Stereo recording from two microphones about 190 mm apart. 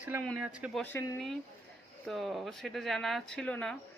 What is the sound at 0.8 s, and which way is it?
Speech, 10° left (ahead or behind).